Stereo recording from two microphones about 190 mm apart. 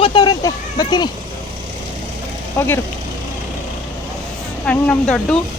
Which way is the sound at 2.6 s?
15° left (ahead or behind).